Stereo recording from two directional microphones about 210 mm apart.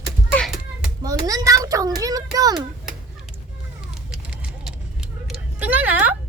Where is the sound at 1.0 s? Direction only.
15° right (ahead or behind).